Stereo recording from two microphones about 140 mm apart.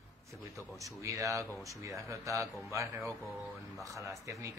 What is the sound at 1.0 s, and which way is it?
Speech, 20° right (ahead or behind).